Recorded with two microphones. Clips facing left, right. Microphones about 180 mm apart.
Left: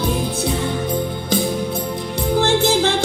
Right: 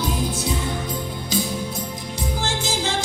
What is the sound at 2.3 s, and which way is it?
Music, 60° left (ahead or behind).